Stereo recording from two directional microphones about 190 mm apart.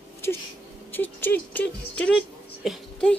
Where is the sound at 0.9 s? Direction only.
10° left (ahead or behind).